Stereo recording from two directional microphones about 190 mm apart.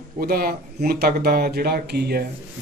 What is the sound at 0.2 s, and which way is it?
A man's voice, 50° right (ahead or behind).